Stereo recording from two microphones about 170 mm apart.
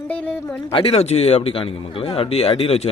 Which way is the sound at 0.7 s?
35° left (ahead or behind).